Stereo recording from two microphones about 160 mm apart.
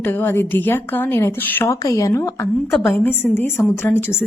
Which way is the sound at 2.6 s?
Centre (ahead or behind).